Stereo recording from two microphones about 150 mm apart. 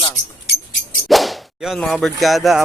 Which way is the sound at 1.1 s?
Centre (ahead or behind).